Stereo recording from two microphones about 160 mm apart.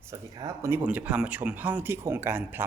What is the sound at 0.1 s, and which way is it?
Speech, 20° right (ahead or behind).